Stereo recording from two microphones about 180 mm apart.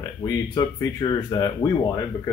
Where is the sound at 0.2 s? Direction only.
20° left (ahead or behind).